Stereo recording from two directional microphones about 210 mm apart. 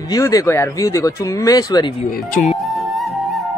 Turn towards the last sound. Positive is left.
turn(degrees=0)  # may be behind; listen again after turning